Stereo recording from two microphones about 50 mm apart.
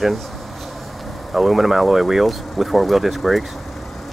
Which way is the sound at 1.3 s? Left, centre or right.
Centre.